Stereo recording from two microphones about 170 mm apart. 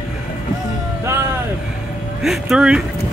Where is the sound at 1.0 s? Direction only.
15° right (ahead or behind).